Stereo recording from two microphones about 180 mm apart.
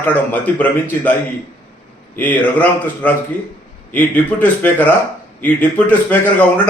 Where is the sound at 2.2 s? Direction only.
10° left (ahead or behind).